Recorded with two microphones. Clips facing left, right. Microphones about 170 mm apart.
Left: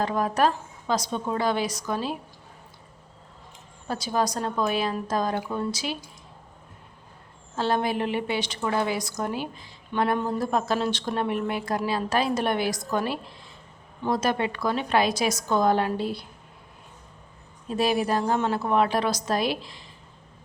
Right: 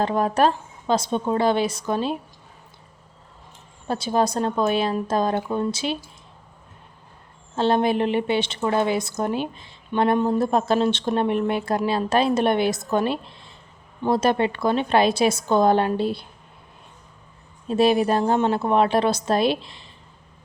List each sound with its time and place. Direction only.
0.0 s a woman's voice: 30° right (ahead or behind)
3.8 s a woman's voice: 25° right (ahead or behind)
7.5 s a woman's voice: 25° right (ahead or behind)
17.7 s a woman's voice: 25° right (ahead or behind)